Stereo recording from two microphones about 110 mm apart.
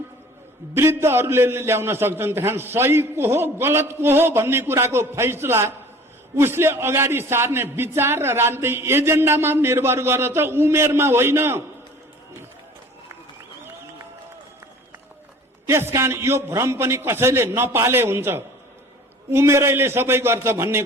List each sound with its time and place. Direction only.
0.7 s a man's voice: 20° right (ahead or behind)
15.6 s a man's voice: 25° right (ahead or behind)